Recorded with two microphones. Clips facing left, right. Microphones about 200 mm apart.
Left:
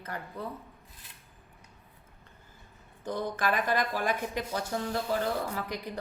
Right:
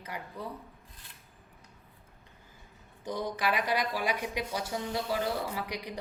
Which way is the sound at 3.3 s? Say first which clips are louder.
Left 1 dB; 50° left (ahead or behind).